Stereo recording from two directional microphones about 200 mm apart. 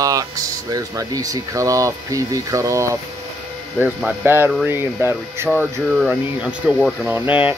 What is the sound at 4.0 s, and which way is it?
Speech, 10° right (ahead or behind).